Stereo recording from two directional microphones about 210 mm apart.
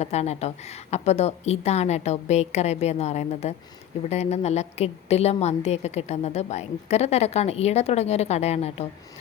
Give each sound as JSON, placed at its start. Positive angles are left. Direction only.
{"t": 0.0, "sound": "a woman's voice", "side_deg": 30}